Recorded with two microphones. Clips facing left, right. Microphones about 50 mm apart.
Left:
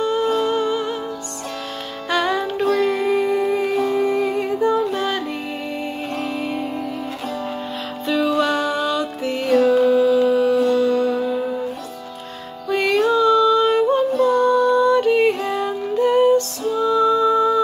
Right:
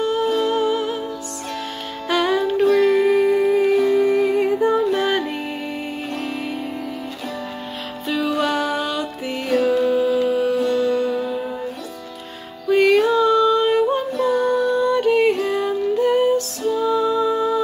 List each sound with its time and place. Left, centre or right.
0.0 s music: centre
2.0 s music: centre
4.6 s music: centre
8.1 s music: centre
12.6 s music: centre